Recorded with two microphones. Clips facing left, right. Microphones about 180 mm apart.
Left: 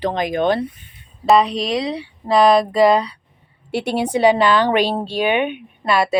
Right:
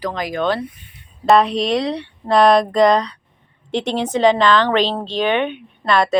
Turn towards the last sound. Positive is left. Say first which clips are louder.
# right 1 dB
turn(degrees=10)  # may be behind; listen again after turning